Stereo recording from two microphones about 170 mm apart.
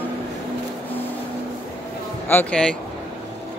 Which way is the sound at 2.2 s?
10° left (ahead or behind).